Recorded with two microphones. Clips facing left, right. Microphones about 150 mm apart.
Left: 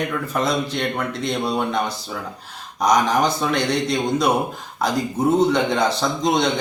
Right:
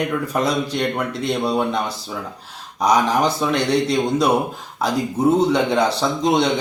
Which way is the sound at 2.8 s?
5° right (ahead or behind).